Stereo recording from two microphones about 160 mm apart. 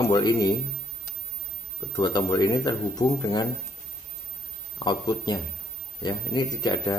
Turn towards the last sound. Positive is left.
turn(degrees=25)  # may be behind; listen again after turning